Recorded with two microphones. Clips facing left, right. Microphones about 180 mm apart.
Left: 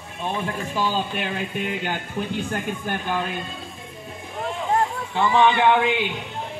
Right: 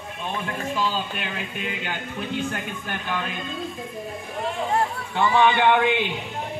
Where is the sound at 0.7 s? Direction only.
35° left (ahead or behind).